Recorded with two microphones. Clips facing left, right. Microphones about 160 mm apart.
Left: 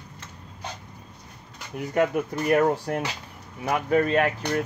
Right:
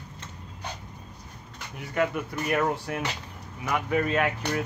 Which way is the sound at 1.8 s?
40° left (ahead or behind).